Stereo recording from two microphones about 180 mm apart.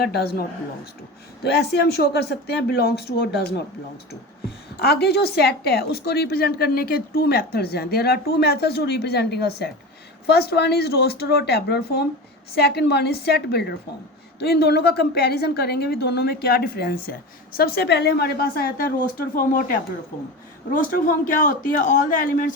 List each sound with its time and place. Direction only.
0.0 s a woman's voice: 60° left (ahead or behind)
1.5 s a woman's voice: 65° left (ahead or behind)
4.8 s a woman's voice: 60° left (ahead or behind)
20.7 s a man's voice: 50° left (ahead or behind)